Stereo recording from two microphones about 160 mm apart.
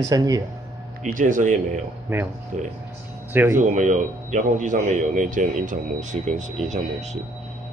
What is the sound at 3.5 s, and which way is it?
A man's voice, 50° right (ahead or behind).